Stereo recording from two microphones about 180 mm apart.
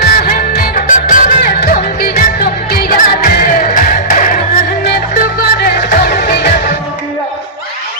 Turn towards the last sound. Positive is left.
turn(degrees=60)  # may be behind; listen again after turning